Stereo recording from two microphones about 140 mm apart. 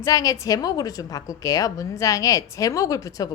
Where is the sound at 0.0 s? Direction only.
25° left (ahead or behind).